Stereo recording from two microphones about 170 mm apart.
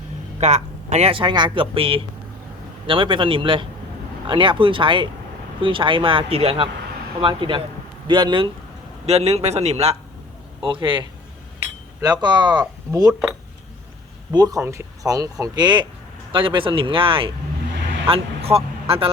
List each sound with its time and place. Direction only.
0.3 s speech: 40° right (ahead or behind)
9.0 s speech: 40° right (ahead or behind); by 13.1 s 20° right (ahead or behind)
14.3 s speech: 20° right (ahead or behind)